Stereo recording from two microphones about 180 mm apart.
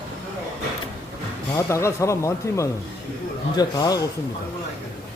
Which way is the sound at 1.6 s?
15° left (ahead or behind).